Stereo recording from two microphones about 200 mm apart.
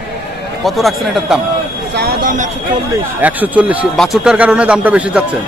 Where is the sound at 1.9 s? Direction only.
45° right (ahead or behind).